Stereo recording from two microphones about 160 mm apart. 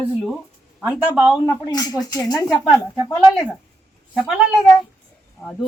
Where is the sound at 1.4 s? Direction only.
25° left (ahead or behind).